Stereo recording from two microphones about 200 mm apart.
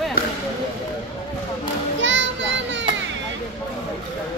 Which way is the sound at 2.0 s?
65° right (ahead or behind).